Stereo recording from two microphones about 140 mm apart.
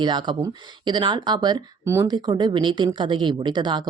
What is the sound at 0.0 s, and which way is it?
Speech, 30° right (ahead or behind).